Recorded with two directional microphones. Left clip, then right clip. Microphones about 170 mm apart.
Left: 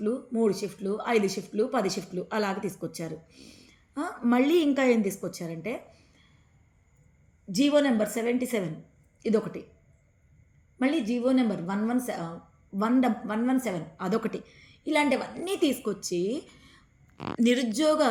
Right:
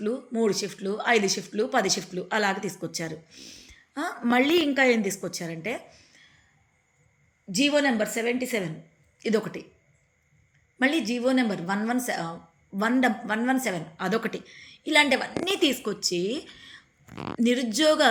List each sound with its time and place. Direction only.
0.0 s a woman's voice: 5° left (ahead or behind)
7.5 s a woman's voice: 20° left (ahead or behind)
9.2 s a woman's voice: 5° left (ahead or behind)
10.8 s a woman's voice: 5° left (ahead or behind)